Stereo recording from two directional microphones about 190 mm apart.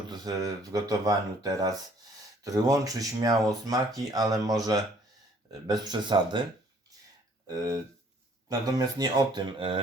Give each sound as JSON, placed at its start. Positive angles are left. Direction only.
{"t": 0.1, "sound": "speech", "side_deg": -20}
{"t": 7.4, "sound": "speech", "side_deg": -20}